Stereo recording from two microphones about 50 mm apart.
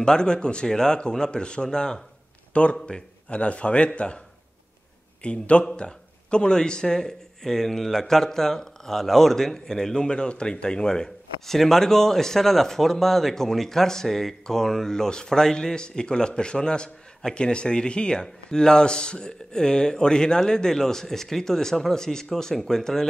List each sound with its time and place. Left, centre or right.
0.0 s a man's voice: centre
5.2 s a man's voice: left